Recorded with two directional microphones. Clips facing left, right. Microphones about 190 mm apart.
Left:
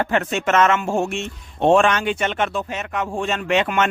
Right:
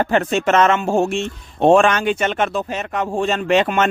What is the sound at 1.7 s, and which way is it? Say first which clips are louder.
Speech: right 2 dB; 45° right (ahead or behind).